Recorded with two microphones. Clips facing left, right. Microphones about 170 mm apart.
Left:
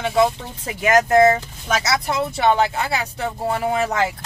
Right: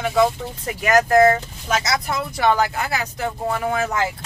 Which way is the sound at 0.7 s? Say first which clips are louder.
Even; 25° left (ahead or behind).